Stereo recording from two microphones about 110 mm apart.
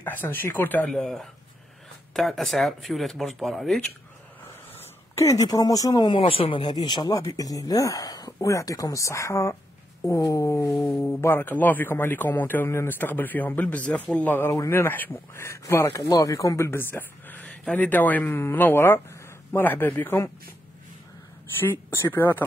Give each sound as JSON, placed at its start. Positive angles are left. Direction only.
{"t": 0.0, "sound": "a man's voice", "side_deg": 15}
{"t": 0.8, "sound": "speech", "side_deg": 5}
{"t": 5.1, "sound": "speech", "side_deg": 30}
{"t": 7.2, "sound": "a man's voice", "side_deg": 30}
{"t": 21.5, "sound": "speech", "side_deg": 20}